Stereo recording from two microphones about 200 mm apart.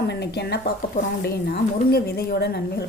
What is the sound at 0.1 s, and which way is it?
A woman's voice, 55° left (ahead or behind).